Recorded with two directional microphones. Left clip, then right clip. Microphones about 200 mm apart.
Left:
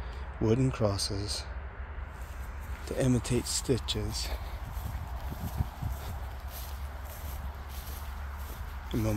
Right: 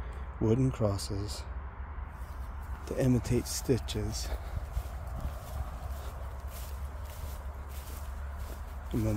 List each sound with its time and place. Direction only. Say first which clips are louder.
0.4 s speech: left 1 dB; 10° right (ahead or behind)
2.9 s speech: even; 15° right (ahead or behind)